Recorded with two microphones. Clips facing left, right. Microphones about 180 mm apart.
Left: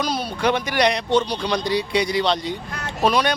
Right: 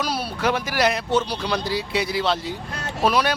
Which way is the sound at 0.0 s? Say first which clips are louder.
Left 2 dB; 5° right (ahead or behind).